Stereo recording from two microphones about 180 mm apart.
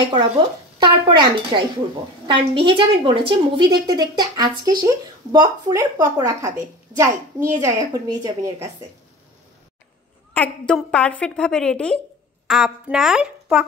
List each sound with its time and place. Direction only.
0.7 s a woman's voice: 25° right (ahead or behind)
10.3 s a woman's voice: 5° left (ahead or behind)